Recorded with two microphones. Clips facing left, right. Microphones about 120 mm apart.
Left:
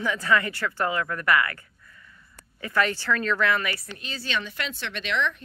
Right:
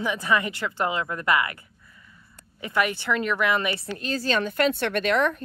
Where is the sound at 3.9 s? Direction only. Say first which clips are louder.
Right 6 dB; 40° right (ahead or behind).